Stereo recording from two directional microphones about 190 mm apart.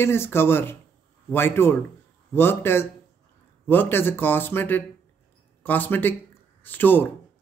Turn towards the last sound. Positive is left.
turn(degrees=10)  # may be behind; listen again after turning